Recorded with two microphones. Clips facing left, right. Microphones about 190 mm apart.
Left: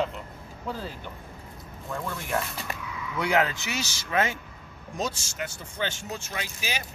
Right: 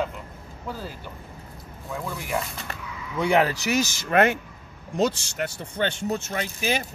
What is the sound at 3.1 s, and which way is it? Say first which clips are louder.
Speech: right 4 dB; 30° right (ahead or behind).